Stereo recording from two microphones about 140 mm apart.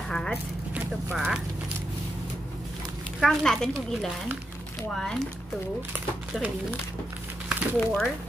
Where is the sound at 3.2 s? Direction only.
5° left (ahead or behind).